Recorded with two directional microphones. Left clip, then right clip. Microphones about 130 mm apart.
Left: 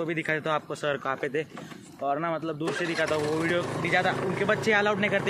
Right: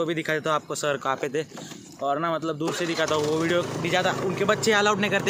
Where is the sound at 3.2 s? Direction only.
25° right (ahead or behind).